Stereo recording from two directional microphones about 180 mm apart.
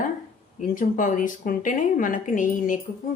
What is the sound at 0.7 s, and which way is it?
A woman's voice, 45° left (ahead or behind).